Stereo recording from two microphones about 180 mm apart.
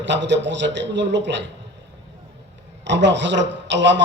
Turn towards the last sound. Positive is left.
turn(degrees=-85)